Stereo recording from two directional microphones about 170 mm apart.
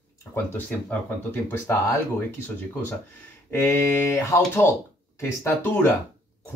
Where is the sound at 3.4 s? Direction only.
15° left (ahead or behind).